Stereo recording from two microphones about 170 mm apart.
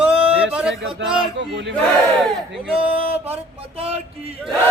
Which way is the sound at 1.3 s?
90° right.